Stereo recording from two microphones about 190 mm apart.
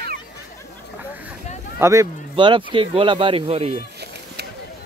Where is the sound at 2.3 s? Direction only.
25° right (ahead or behind).